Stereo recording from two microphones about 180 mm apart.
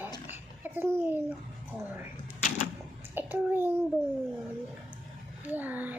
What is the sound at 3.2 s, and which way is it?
Speech, 10° right (ahead or behind).